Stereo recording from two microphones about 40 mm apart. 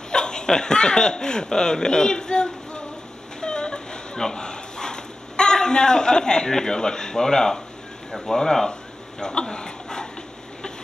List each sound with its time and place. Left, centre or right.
0.1 s speech: centre
3.3 s dog: centre
8.1 s speech: centre